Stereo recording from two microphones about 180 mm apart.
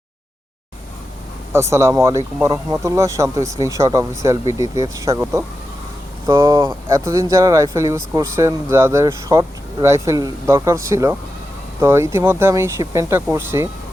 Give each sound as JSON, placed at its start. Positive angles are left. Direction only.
{"t": 1.5, "sound": "speech", "side_deg": -15}